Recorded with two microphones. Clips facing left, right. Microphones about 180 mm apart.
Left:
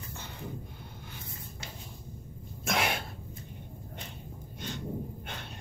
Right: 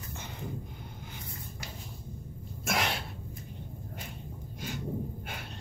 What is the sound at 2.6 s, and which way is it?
Sneeze, centre (ahead or behind).